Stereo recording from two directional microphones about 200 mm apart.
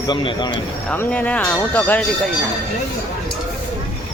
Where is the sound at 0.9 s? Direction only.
10° left (ahead or behind).